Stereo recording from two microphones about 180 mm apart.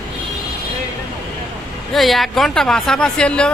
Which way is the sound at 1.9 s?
Centre (ahead or behind).